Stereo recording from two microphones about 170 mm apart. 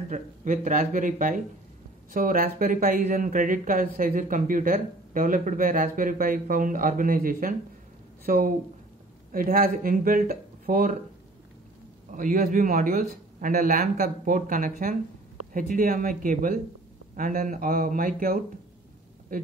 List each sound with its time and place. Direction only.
0.1 s speech: 50° right (ahead or behind)
12.1 s speech: 50° right (ahead or behind)